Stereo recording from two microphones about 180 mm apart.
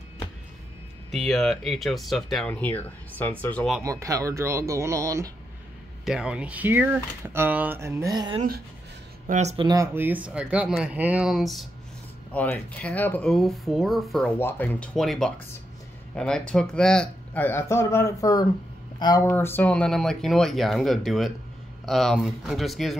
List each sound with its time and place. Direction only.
1.1 s speech: centre (ahead or behind)
3.8 s speech: 20° right (ahead or behind)
6.0 s speech: 5° right (ahead or behind); by 8.4 s 25° right (ahead or behind)
9.3 s speech: 40° right (ahead or behind)
9.7 s speech: 15° right (ahead or behind)